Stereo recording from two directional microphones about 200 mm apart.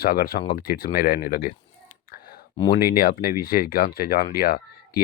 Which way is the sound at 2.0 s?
50° left (ahead or behind).